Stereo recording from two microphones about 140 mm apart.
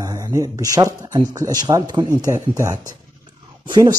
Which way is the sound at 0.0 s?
25° right (ahead or behind).